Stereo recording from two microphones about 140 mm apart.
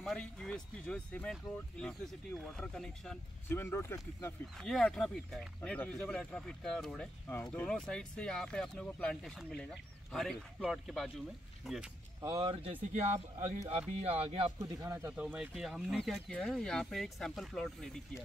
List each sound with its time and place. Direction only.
0.0 s speech: 5° left (ahead or behind)
3.4 s speech: 15° left (ahead or behind)
4.6 s speech: 5° left (ahead or behind)
7.2 s speech: 15° left (ahead or behind); by 11.9 s centre (ahead or behind)
12.2 s speech: 25° right (ahead or behind)
12.9 s speech: 60° right (ahead or behind)
14.0 s speech: 45° right (ahead or behind)
14.6 s speech: 25° right (ahead or behind)
15.0 s speech: 5° right (ahead or behind)